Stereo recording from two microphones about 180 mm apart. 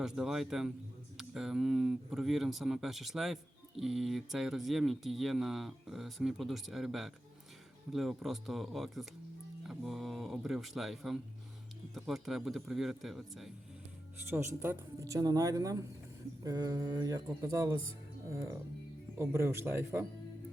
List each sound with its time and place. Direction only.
0.0 s speech: centre (ahead or behind)
14.3 s speech: 10° right (ahead or behind)
19.2 s speech: 15° right (ahead or behind)